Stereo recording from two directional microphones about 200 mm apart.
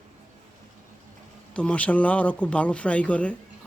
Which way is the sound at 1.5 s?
5° left (ahead or behind).